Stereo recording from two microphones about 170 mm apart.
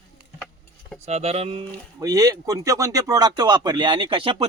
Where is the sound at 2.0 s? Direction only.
20° right (ahead or behind).